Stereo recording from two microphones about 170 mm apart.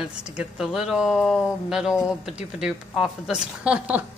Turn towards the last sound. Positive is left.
turn(degrees=-5)  # may be behind; listen again after turning